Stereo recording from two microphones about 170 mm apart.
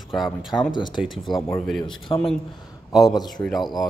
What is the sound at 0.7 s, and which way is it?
Speech, 25° left (ahead or behind).